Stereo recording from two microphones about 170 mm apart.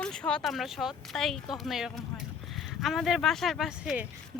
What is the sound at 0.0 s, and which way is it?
Speech, 5° left (ahead or behind).